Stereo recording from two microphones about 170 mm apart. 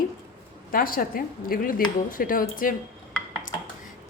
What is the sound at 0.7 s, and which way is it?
A woman's voice, 55° left (ahead or behind).